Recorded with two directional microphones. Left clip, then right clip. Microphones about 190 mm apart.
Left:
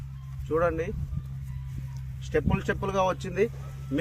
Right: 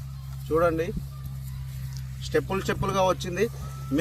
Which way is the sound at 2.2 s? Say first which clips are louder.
Right 2 dB; centre (ahead or behind).